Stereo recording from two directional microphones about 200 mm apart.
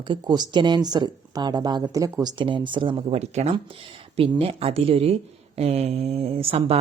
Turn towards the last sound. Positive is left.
turn(degrees=-30)  # may be behind; listen again after turning